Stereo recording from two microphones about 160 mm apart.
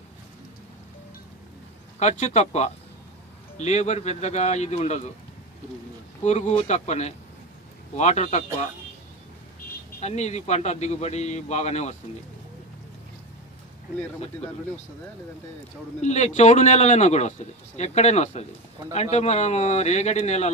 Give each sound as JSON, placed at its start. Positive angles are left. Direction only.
{"t": 2.0, "sound": "a man's voice", "side_deg": 45}
{"t": 6.2, "sound": "a man's voice", "side_deg": 45}
{"t": 9.9, "sound": "a man's voice", "side_deg": 45}
{"t": 16.0, "sound": "a man's voice", "side_deg": 45}